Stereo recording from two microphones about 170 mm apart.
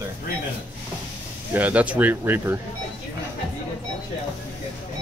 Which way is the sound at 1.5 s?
10° right (ahead or behind).